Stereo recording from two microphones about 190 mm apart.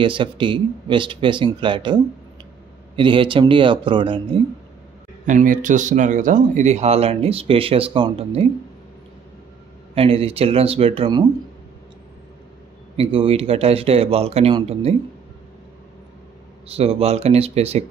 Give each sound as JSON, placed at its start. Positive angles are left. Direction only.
{"t": 0.0, "sound": "speech", "side_deg": -25}
{"t": 3.0, "sound": "speech", "side_deg": -25}
{"t": 5.2, "sound": "speech", "side_deg": -45}
{"t": 9.9, "sound": "speech", "side_deg": -30}
{"t": 12.9, "sound": "speech", "side_deg": -30}
{"t": 16.6, "sound": "speech", "side_deg": -30}